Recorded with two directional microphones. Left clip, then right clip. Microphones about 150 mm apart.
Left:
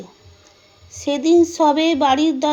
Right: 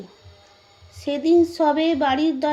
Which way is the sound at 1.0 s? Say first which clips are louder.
Left 3 dB; 25° left (ahead or behind).